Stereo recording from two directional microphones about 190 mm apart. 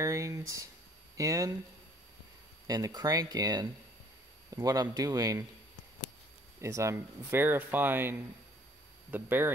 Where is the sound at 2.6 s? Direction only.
20° right (ahead or behind).